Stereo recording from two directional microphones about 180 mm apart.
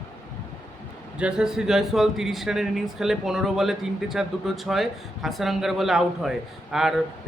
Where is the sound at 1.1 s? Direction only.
5° right (ahead or behind).